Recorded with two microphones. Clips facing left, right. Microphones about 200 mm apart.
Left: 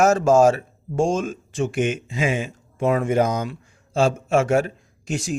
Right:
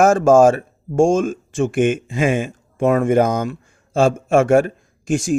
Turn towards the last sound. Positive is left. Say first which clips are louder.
# right 7 dB
turn(degrees=-50)  # may be behind; listen again after turning